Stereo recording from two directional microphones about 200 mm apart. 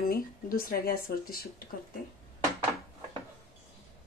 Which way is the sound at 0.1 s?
45° left (ahead or behind).